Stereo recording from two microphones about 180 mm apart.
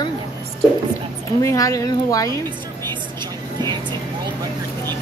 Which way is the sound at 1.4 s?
15° left (ahead or behind).